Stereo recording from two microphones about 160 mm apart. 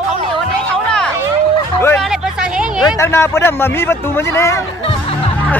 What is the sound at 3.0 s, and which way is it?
Speech, 15° left (ahead or behind).